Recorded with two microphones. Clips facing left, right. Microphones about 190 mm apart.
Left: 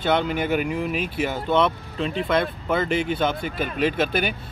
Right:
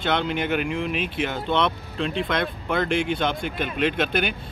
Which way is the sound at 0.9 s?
45° left (ahead or behind).